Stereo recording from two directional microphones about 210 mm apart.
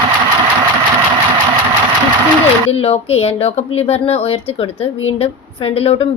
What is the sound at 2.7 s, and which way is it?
A woman's voice, 30° left (ahead or behind).